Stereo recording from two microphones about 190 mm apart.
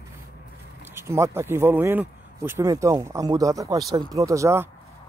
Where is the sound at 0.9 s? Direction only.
15° right (ahead or behind).